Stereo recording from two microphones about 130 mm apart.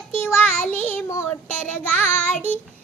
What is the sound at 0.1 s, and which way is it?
Child singing, 20° left (ahead or behind).